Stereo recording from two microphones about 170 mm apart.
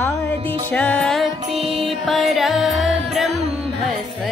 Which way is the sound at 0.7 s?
5° left (ahead or behind).